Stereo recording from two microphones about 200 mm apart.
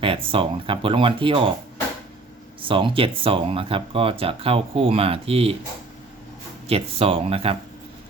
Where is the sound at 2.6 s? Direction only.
25° right (ahead or behind).